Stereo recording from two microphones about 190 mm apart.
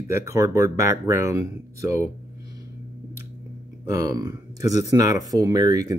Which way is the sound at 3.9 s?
15° right (ahead or behind).